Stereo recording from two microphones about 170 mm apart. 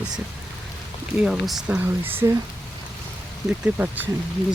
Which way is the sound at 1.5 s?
5° right (ahead or behind).